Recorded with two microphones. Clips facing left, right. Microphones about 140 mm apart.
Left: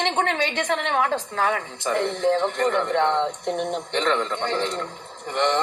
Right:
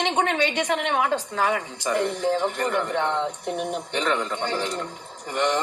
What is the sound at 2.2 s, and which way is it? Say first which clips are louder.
Speech: left 3 dB; 10° right (ahead or behind).